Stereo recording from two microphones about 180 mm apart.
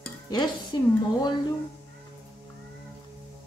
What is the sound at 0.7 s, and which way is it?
Speech, 25° left (ahead or behind).